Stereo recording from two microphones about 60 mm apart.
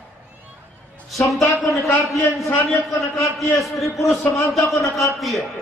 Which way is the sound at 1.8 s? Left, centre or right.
Left.